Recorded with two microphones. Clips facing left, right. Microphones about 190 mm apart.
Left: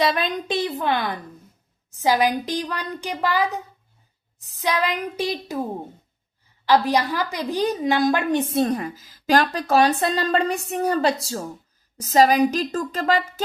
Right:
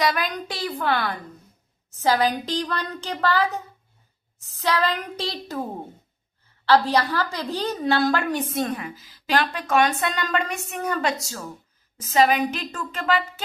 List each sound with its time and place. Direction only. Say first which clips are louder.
0.0 s a child's voice: left 2 dB; 25° left (ahead or behind)
6.7 s a woman's voice: even; 15° left (ahead or behind); by 13.4 s 40° left (ahead or behind)